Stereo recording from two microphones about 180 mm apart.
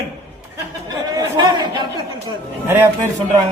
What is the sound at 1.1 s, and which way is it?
Speech, 25° right (ahead or behind).